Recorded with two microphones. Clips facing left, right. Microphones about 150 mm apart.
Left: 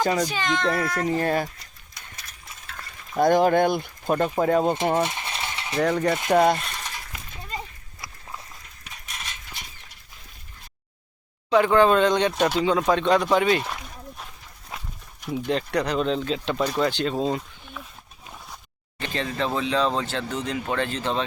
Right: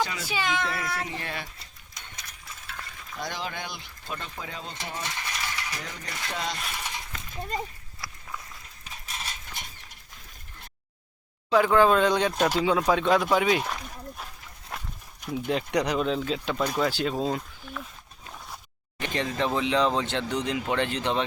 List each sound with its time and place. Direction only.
0.0 s speech: 45° left (ahead or behind)
0.3 s speech: 10° right (ahead or behind)
1.0 s speech: 45° left (ahead or behind)
3.2 s speech: 50° left (ahead or behind)
5.0 s mechanisms: 20° left (ahead or behind)
5.8 s speech: 60° left (ahead or behind)
6.6 s a sound: 10° right (ahead or behind)
8.0 s walk: 20° left (ahead or behind)
8.8 s a sound: 30° right (ahead or behind)
11.5 s speech: centre (ahead or behind)
14.7 s livestock: centre (ahead or behind)
15.2 s speech: 5° right (ahead or behind)
18.9 s speech: 15° right (ahead or behind)